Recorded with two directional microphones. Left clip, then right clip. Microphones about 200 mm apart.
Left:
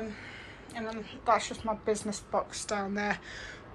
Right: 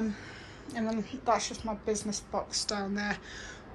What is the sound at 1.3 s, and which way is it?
A woman's voice, 20° right (ahead or behind).